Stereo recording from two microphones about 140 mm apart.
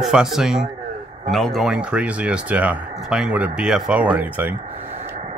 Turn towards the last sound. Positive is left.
turn(degrees=-10)  # may be behind; listen again after turning